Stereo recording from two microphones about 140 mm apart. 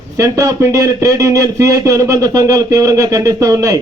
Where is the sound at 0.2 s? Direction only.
25° right (ahead or behind).